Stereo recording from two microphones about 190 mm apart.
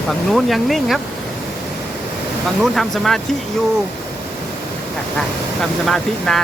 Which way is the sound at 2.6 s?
Centre (ahead or behind).